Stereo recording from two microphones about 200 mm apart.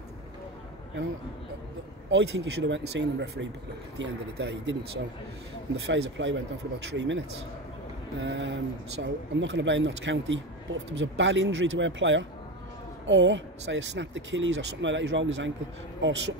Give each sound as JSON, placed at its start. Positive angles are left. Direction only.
{"t": 2.0, "sound": "speech", "side_deg": -65}